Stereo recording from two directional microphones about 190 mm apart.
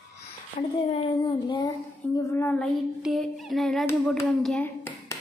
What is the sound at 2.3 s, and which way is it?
Child singing, 10° left (ahead or behind).